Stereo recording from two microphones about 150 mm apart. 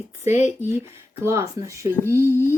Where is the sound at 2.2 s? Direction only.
15° right (ahead or behind).